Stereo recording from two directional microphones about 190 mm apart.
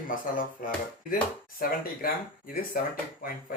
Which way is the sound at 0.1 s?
45° left (ahead or behind).